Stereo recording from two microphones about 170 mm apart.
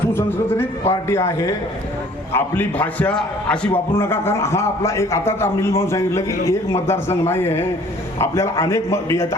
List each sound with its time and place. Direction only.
0.1 s a man's voice: 15° left (ahead or behind)